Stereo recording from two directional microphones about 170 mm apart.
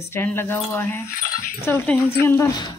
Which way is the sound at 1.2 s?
50° left (ahead or behind).